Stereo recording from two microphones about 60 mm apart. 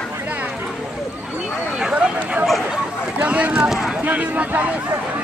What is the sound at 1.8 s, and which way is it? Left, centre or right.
Run, centre.